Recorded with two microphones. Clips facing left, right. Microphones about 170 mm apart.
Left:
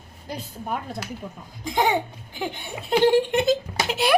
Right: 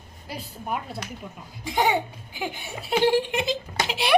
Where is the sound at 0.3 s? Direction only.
5° right (ahead or behind).